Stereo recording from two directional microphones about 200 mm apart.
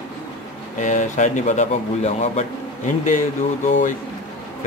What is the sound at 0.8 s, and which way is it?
A man's voice, 40° left (ahead or behind).